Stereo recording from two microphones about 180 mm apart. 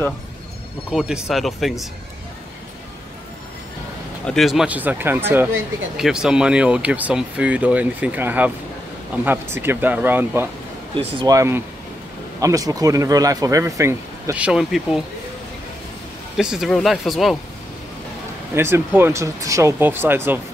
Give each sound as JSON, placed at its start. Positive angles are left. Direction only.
{"t": 0.9, "sound": "speech", "side_deg": -5}
{"t": 4.3, "sound": "speech", "side_deg": 0}
{"t": 16.3, "sound": "speech", "side_deg": -5}
{"t": 18.5, "sound": "speech", "side_deg": -15}